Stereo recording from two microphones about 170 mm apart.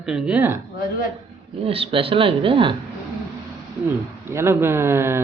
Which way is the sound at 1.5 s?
35° right (ahead or behind).